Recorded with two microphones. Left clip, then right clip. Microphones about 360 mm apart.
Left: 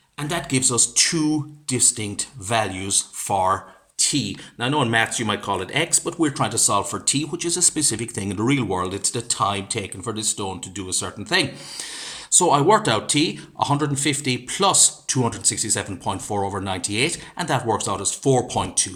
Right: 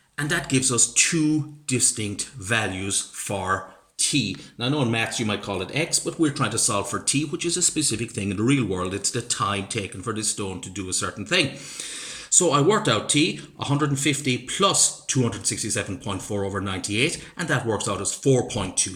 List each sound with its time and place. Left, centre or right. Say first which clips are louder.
0.2 s speech: even; centre